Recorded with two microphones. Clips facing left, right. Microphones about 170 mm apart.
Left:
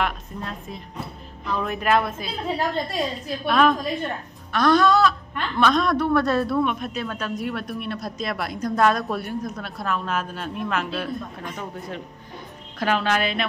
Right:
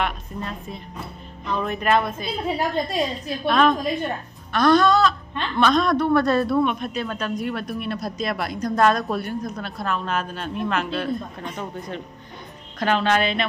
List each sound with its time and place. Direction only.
0.0 s a woman's voice: centre (ahead or behind)
2.4 s a woman's voice: 15° right (ahead or behind)
3.4 s a woman's voice: 5° left (ahead or behind)